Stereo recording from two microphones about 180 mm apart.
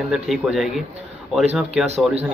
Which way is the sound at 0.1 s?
Centre (ahead or behind).